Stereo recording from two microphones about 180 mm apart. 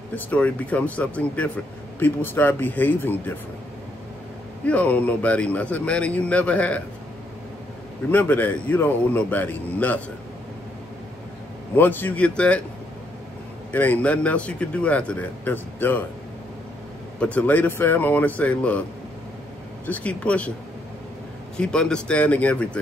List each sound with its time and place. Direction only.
0.1 s a man's voice: 10° left (ahead or behind)
4.6 s a man's voice: 5° left (ahead or behind)
8.1 s a man's voice: 10° left (ahead or behind)
11.7 s a man's voice: 10° left (ahead or behind)
13.7 s a man's voice: 10° left (ahead or behind)
17.2 s a man's voice: 10° left (ahead or behind)
19.9 s a man's voice: 5° left (ahead or behind)
21.5 s speech: 5° left (ahead or behind)